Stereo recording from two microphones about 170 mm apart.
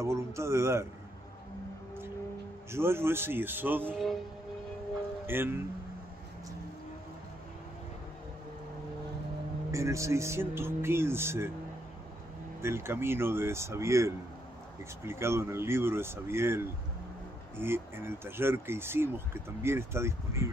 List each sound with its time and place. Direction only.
0.0 s speech: 15° right (ahead or behind)
2.7 s speech: 15° right (ahead or behind)
5.2 s speech: 15° right (ahead or behind)
9.7 s speech: 15° right (ahead or behind)
12.6 s speech: 15° right (ahead or behind)